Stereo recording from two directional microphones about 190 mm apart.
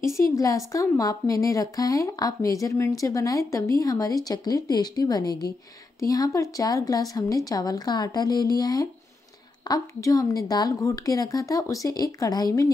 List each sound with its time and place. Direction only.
0.2 s a woman's voice: 15° left (ahead or behind)